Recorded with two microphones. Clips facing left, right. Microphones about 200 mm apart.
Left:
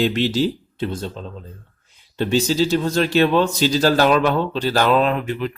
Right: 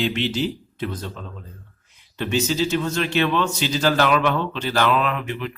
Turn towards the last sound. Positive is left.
turn(degrees=35)  # may be behind; listen again after turning